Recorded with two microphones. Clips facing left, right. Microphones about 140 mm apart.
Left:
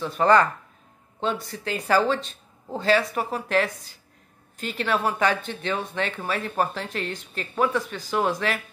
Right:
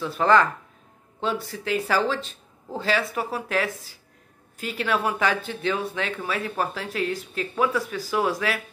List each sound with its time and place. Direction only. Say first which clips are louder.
0.0 s speech: left 1 dB; centre (ahead or behind)